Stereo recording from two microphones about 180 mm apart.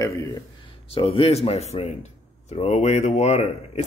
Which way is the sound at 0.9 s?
30° left (ahead or behind).